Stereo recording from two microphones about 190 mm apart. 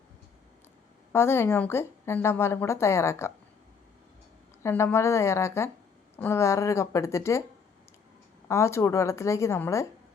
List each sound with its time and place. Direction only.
1.1 s a woman's voice: 10° left (ahead or behind)
4.6 s a woman's voice: 15° left (ahead or behind)
8.4 s a woman's voice: 15° left (ahead or behind)